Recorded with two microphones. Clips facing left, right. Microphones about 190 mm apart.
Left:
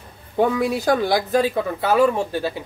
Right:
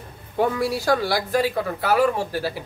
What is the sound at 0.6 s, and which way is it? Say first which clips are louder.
A woman's voice: left 2 dB; 20° left (ahead or behind).